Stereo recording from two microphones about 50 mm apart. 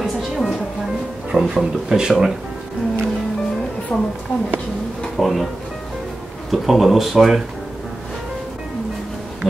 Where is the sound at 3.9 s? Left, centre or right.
Left.